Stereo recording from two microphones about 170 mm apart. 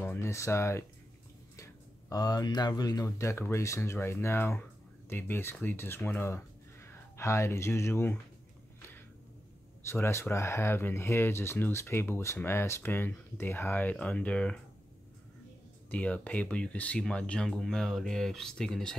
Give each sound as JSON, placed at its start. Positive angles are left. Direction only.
{"t": 0.0, "sound": "speech", "side_deg": 15}
{"t": 9.8, "sound": "speech", "side_deg": 15}
{"t": 15.9, "sound": "speech", "side_deg": 10}